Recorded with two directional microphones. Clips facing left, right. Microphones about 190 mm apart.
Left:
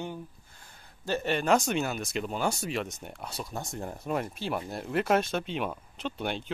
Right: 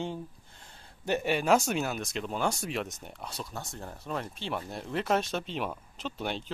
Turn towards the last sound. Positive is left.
turn(degrees=0)  # may be behind; listen again after turning